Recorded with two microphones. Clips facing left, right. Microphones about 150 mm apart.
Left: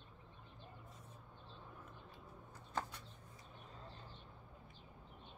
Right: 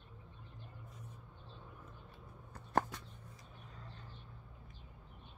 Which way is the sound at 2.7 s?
65° right (ahead or behind).